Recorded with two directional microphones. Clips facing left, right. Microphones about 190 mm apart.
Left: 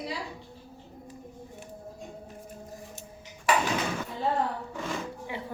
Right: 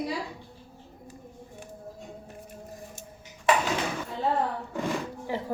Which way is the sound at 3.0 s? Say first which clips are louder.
Even; 50° right (ahead or behind).